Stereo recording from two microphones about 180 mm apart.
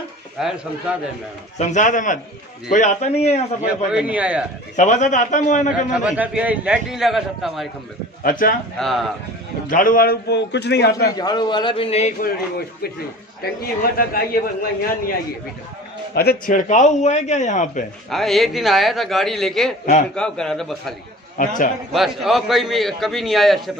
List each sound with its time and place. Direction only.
0.4 s a man's voice: centre (ahead or behind)
1.7 s a man's voice: 45° left (ahead or behind)
3.6 s a man's voice: 5° right (ahead or behind)
4.7 s a man's voice: 45° left (ahead or behind)
5.9 s a man's voice: 5° right (ahead or behind)
8.2 s a man's voice: 50° left (ahead or behind)
8.7 s a man's voice: centre (ahead or behind)
9.7 s a man's voice: 50° left (ahead or behind)
11.1 s a man's voice: 20° left (ahead or behind)
12.2 s a man's voice: 60° left (ahead or behind)
16.2 s a man's voice: 55° left (ahead or behind)
18.1 s a man's voice: centre (ahead or behind)
21.4 s a man's voice: 50° left (ahead or behind)
21.9 s a man's voice: centre (ahead or behind)